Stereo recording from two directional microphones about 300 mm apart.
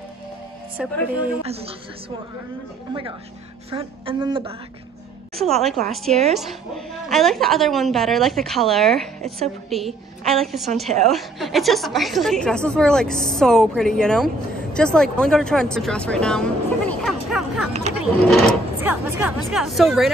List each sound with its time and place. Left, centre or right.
0.7 s a woman's voice: centre
1.4 s a woman's voice: centre
5.3 s a woman's voice: centre